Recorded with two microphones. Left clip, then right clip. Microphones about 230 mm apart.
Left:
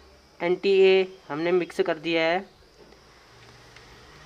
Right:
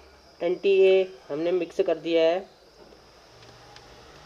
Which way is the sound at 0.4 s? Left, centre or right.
Left.